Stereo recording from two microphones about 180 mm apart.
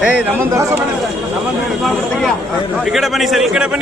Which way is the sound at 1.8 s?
Centre (ahead or behind).